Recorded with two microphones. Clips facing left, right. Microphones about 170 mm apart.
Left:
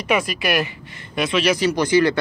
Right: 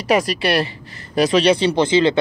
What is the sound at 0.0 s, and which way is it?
Speech, 40° right (ahead or behind).